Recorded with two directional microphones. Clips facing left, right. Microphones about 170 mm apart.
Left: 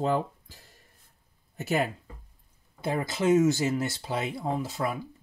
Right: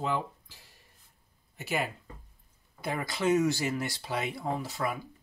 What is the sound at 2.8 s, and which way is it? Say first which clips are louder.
Speech: left 3 dB; 25° left (ahead or behind).